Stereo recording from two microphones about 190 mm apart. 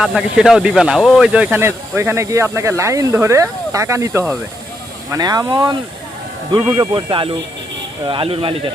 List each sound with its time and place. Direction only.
0.0 s speech: 5° right (ahead or behind); by 5.7 s 20° right (ahead or behind)
6.9 s speech: 25° right (ahead or behind)